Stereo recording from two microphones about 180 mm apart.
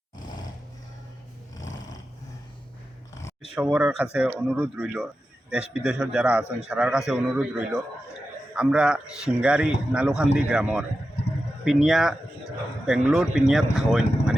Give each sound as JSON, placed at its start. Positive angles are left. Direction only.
{"t": 3.5, "sound": "a man's voice", "side_deg": -5}